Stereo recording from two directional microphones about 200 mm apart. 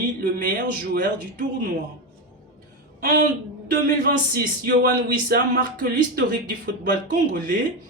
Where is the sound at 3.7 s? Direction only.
50° right (ahead or behind).